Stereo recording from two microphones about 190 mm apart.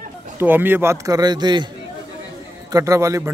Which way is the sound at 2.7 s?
15° right (ahead or behind).